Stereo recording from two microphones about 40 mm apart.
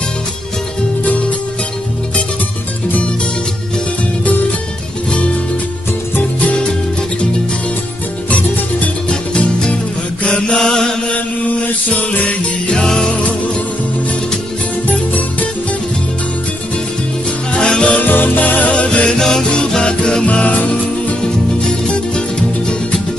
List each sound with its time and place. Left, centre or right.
6.4 s music: left
8.3 s music: left
10.2 s mantra: left
11.1 s mantra: left
12.7 s music: centre
14.9 s music: left
17.5 s music: left
18.0 s music: left
18.7 s music: left
19.0 s music: centre
20.2 s music: left
21.5 s music: left